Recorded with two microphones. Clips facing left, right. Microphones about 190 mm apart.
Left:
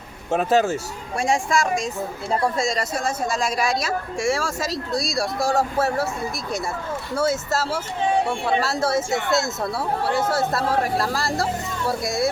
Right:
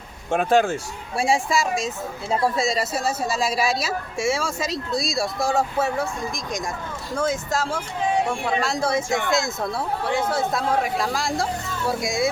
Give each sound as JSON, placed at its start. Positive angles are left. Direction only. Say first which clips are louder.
{"t": 0.3, "sound": "speech", "louder": "even", "side_deg": 5}
{"t": 1.1, "sound": "speech", "louder": "even", "side_deg": -5}
{"t": 2.6, "sound": "speech", "louder": "right 1 dB", "side_deg": -5}